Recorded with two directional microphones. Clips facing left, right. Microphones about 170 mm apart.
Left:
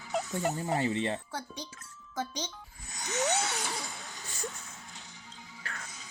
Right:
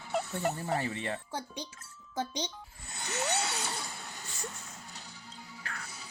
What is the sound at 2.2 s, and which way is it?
Speech, 15° right (ahead or behind).